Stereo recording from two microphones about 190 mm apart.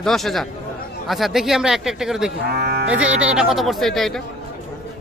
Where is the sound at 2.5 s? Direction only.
55° right (ahead or behind).